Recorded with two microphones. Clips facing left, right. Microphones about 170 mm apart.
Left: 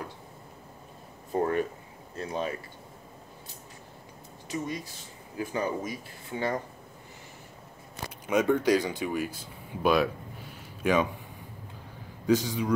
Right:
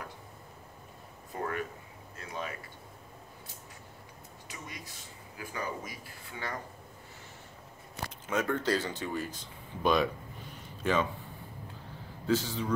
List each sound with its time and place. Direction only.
1.3 s speech: 30° left (ahead or behind)
4.5 s speech: 30° left (ahead or behind)
8.3 s speech: 15° left (ahead or behind)
12.3 s speech: 15° left (ahead or behind)